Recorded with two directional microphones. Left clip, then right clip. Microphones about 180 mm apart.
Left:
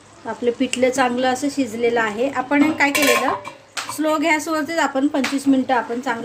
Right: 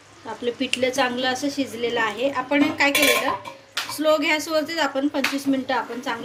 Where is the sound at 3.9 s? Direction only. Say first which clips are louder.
Left 1 dB; 45° left (ahead or behind).